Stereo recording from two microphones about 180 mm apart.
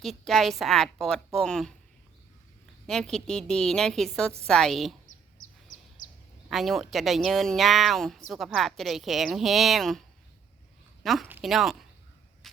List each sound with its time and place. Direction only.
0.0 s speech: centre (ahead or behind)
2.8 s speech: 5° left (ahead or behind)
6.0 s a sound: 50° left (ahead or behind)
6.5 s speech: centre (ahead or behind)
11.0 s speech: centre (ahead or behind)